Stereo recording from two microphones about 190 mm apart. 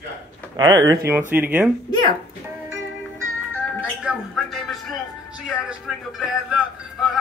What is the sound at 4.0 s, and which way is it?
Speech, centre (ahead or behind).